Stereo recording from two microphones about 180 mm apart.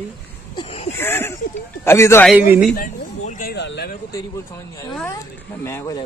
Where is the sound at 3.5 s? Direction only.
70° left (ahead or behind).